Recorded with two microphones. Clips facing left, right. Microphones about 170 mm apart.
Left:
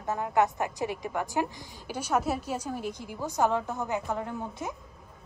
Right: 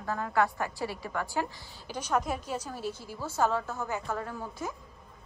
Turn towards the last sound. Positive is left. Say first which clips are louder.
# left 2 dB
turn(degrees=20)  # may be behind; listen again after turning